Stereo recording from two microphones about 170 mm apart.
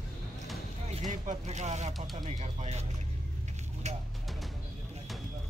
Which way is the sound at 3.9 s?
40° right (ahead or behind).